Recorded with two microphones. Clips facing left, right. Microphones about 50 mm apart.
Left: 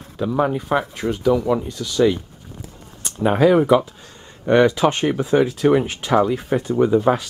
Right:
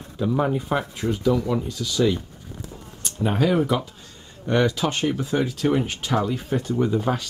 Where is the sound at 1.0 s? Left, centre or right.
Centre.